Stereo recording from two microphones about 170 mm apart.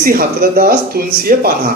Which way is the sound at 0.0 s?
60° right (ahead or behind).